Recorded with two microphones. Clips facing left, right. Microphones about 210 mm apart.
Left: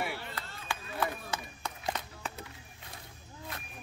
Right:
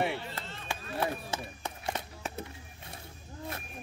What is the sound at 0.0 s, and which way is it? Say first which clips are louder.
Chop: right 5 dB; 25° right (ahead or behind).